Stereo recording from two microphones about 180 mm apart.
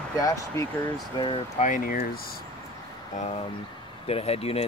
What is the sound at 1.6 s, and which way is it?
Speech, 50° left (ahead or behind).